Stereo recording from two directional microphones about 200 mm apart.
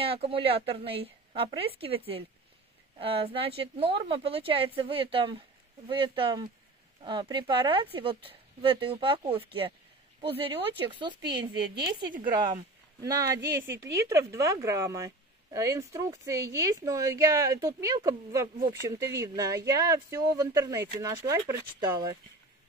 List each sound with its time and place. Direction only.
0.0 s speech: 25° right (ahead or behind)
11.0 s speech: 25° right (ahead or behind)
13.0 s speech: 15° right (ahead or behind)